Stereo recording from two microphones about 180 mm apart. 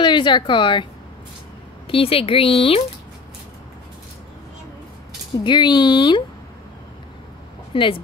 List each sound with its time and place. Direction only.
0.0 s a woman's voice: 25° left (ahead or behind)
1.9 s speech: 30° left (ahead or behind)
5.4 s a woman's voice: 25° left (ahead or behind)
7.7 s a woman's voice: 30° left (ahead or behind)